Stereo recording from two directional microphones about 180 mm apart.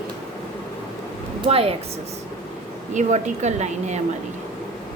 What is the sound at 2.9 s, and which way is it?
A woman's voice, 40° right (ahead or behind).